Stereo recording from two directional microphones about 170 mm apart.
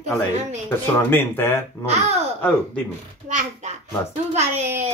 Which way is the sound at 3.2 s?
45° right (ahead or behind).